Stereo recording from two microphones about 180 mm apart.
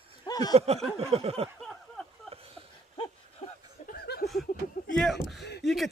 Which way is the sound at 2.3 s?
35° right (ahead or behind).